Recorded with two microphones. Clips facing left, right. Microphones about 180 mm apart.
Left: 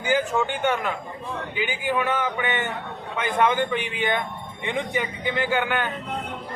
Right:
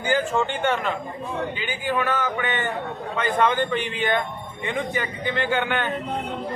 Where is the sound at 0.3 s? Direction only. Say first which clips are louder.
Right 1 dB; 10° left (ahead or behind).